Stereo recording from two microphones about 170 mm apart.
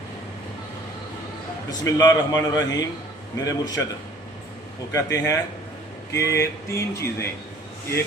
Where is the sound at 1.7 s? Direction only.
20° left (ahead or behind).